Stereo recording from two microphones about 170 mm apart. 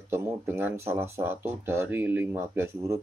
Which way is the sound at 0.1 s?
15° right (ahead or behind).